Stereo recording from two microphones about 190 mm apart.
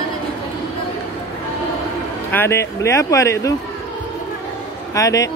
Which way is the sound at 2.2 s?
10° left (ahead or behind).